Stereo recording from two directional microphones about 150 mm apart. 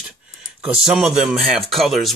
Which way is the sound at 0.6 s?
5° right (ahead or behind).